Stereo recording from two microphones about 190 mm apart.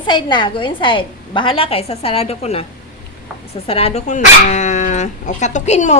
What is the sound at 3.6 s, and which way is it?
Speech, 30° left (ahead or behind).